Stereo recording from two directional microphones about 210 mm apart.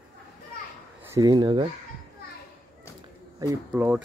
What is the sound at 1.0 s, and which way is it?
Speech, 15° right (ahead or behind).